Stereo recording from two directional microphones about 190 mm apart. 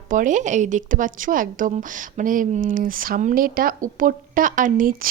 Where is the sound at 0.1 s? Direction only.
45° right (ahead or behind).